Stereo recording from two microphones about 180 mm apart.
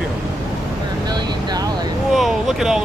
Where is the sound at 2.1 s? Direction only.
Centre (ahead or behind).